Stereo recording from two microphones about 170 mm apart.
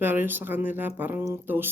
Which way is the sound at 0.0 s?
10° right (ahead or behind).